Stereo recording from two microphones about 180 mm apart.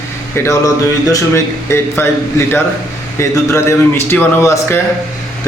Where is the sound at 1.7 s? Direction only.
15° left (ahead or behind).